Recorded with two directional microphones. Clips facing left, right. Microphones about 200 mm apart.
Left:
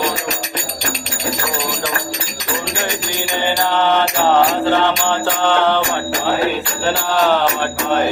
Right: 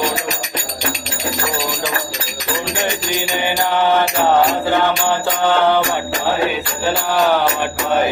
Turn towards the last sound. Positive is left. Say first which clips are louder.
# even
turn(degrees=-10)  # may be behind; listen again after turning